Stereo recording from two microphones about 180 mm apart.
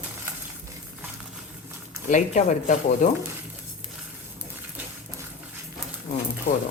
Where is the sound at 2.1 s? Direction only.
45° left (ahead or behind).